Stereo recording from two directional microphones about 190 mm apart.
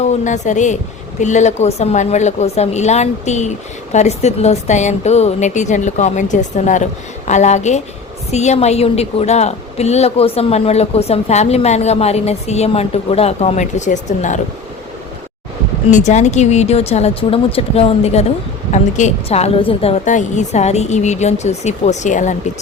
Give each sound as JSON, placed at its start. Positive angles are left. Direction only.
{"t": 0.0, "sound": "a woman's voice", "side_deg": 40}
{"t": 15.9, "sound": "a woman's voice", "side_deg": 40}